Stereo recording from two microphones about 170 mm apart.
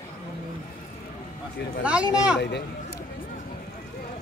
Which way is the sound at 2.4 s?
80° left.